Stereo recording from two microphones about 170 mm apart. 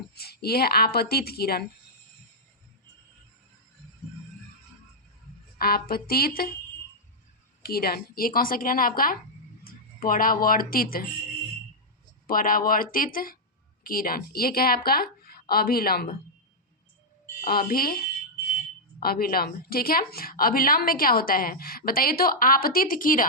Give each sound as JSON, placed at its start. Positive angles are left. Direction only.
{"t": 0.1, "sound": "a woman's voice", "side_deg": 70}
{"t": 5.5, "sound": "a woman's voice", "side_deg": 60}
{"t": 7.6, "sound": "a woman's voice", "side_deg": 60}
{"t": 12.3, "sound": "a woman's voice", "side_deg": 55}
{"t": 17.4, "sound": "a woman's voice", "side_deg": 60}